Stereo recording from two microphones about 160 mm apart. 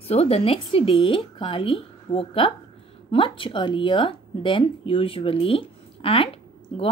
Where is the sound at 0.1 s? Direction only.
40° left (ahead or behind).